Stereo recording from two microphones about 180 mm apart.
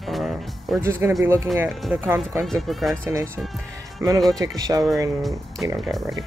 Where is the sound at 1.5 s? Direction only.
Centre (ahead or behind).